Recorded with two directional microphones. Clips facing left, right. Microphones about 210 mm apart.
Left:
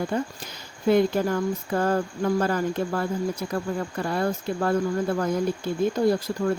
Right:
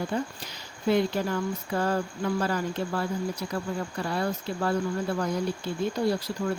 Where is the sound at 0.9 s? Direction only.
50° left (ahead or behind).